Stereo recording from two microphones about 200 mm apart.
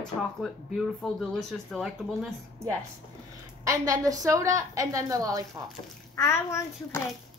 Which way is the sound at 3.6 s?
15° right (ahead or behind).